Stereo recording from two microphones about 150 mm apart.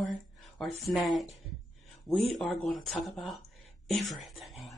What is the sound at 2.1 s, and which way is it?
Speech, 40° left (ahead or behind).